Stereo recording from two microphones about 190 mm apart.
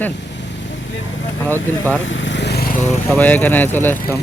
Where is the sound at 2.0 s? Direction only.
75° left (ahead or behind); by 2.6 s 60° left (ahead or behind).